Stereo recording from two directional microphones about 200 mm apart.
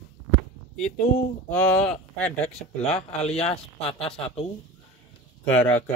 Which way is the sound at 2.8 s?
30° left (ahead or behind).